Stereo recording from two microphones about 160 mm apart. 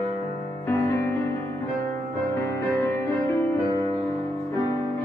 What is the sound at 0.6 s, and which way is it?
Music, 15° left (ahead or behind).